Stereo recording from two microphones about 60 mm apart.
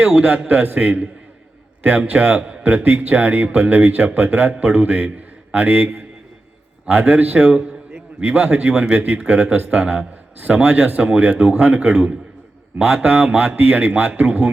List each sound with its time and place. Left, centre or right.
0.2 s speech: right